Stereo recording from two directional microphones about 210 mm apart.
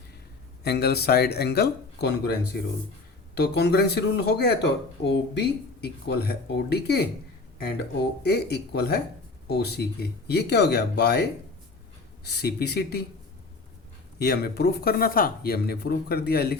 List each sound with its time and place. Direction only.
0.6 s speech: 50° left (ahead or behind)
8.2 s speech: 50° left (ahead or behind)
14.2 s speech: 50° left (ahead or behind)